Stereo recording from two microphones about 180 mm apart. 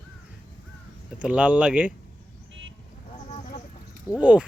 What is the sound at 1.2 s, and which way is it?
Speech, 5° right (ahead or behind).